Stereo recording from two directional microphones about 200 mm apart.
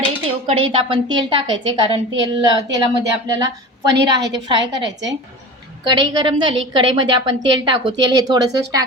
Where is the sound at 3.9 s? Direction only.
60° right (ahead or behind).